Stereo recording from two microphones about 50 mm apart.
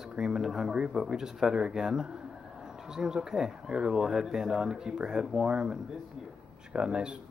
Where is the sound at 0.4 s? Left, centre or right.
Centre.